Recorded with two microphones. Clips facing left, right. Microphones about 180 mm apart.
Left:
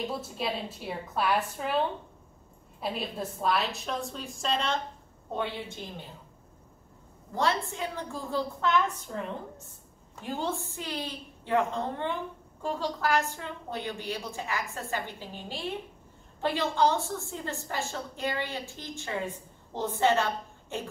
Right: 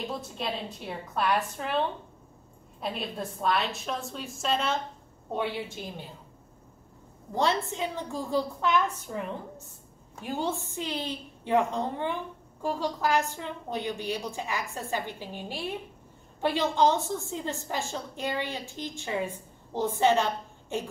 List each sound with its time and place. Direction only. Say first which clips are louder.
0.1 s a woman's voice: left 1 dB; 5° left (ahead or behind)
7.3 s a woman's voice: right 2 dB; 20° right (ahead or behind)
10.2 s a woman's voice: right 1 dB; 10° right (ahead or behind)